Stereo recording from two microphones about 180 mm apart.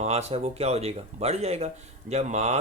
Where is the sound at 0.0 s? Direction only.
35° right (ahead or behind).